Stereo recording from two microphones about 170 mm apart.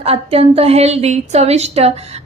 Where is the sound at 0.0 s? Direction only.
35° right (ahead or behind).